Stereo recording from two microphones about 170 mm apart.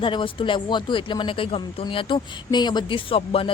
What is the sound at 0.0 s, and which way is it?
Speech, 30° left (ahead or behind).